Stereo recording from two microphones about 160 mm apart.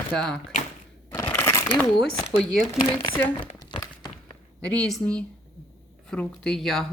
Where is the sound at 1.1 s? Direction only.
15° left (ahead or behind).